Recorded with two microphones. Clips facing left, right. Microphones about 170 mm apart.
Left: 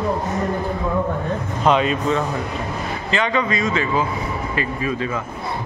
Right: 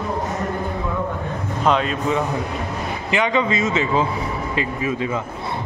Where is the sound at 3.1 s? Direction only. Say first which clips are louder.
Right 1 dB; 15° right (ahead or behind).